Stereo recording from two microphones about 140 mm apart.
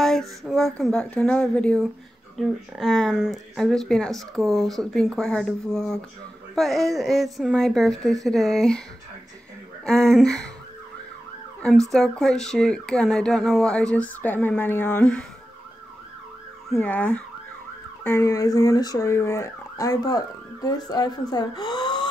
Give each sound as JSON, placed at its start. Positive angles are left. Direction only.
{"t": 0.0, "sound": "speech", "side_deg": 0}
{"t": 2.3, "sound": "speech", "side_deg": 0}
{"t": 9.8, "sound": "speech", "side_deg": 0}
{"t": 11.9, "sound": "speech", "side_deg": 5}
{"t": 16.7, "sound": "speech", "side_deg": 10}
{"t": 18.0, "sound": "a sound", "side_deg": 20}